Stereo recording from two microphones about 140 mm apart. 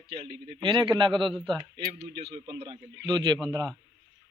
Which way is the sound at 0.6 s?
35° right (ahead or behind).